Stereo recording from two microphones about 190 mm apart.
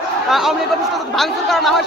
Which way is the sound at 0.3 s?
Centre (ahead or behind).